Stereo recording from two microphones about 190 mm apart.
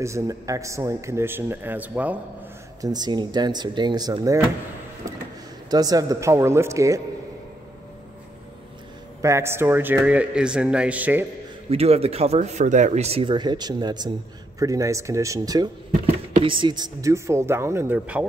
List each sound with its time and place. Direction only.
0.0 s a man's voice: 15° right (ahead or behind)
2.8 s speech: 20° right (ahead or behind)
5.1 s a sound: 15° right (ahead or behind)
5.7 s a man's voice: 20° right (ahead or behind)
9.2 s a man's voice: 15° right (ahead or behind)
11.7 s a man's voice: 30° right (ahead or behind); by 18.2 s 10° right (ahead or behind)